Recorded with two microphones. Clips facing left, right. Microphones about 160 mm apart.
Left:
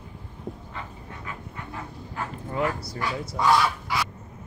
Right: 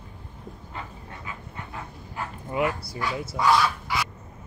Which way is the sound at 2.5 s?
10° right (ahead or behind).